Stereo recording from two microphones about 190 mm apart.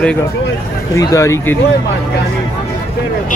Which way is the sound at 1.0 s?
15° left (ahead or behind).